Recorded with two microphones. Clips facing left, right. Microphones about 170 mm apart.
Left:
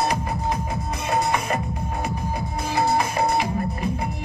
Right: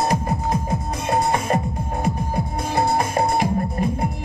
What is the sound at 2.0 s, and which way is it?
Music, 50° right (ahead or behind).